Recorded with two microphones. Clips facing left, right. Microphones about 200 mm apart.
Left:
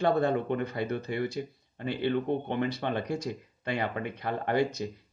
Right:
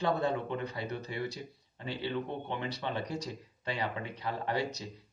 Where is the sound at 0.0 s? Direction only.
55° left (ahead or behind).